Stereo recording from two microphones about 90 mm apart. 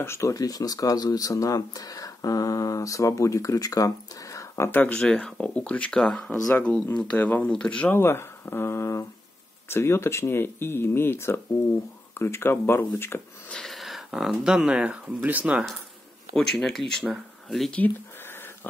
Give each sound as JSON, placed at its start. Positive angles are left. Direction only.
{"t": 0.0, "sound": "speech", "side_deg": 30}
{"t": 4.6, "sound": "speech", "side_deg": 15}
{"t": 7.9, "sound": "speech", "side_deg": 30}
{"t": 13.5, "sound": "speech", "side_deg": 5}
{"t": 16.3, "sound": "speech", "side_deg": 5}
{"t": 17.7, "sound": "a sound", "side_deg": 20}